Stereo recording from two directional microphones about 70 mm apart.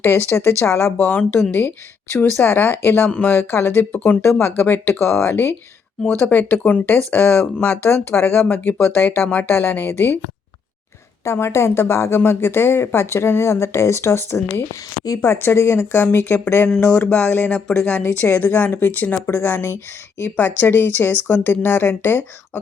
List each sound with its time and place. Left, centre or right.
0.0 s a woman's voice: left
3.1 s speech: left
3.3 s speech: left
3.9 s speech: left
4.2 s speech: left
11.2 s speech: left
15.0 s speech: left
15.3 s speech: left
16.8 s speech: left
18.0 s speech: left